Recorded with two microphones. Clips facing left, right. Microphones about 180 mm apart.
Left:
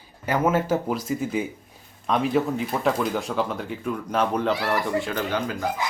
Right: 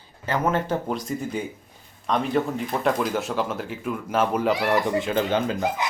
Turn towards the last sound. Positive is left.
turn(degrees=-25)  # may be behind; listen again after turning